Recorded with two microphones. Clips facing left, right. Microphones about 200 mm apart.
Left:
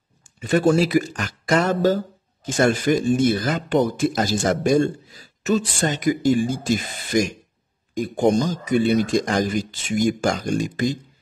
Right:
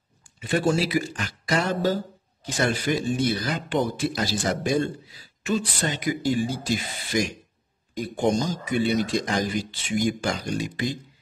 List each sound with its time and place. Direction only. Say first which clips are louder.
0.4 s speech: left 5 dB; 45° left (ahead or behind)